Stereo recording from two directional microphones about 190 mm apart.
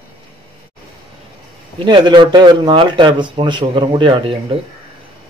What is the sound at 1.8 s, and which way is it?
A man's voice, 25° right (ahead or behind).